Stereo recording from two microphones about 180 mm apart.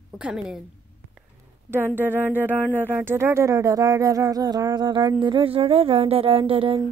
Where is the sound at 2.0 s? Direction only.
10° right (ahead or behind); by 6.8 s 30° right (ahead or behind).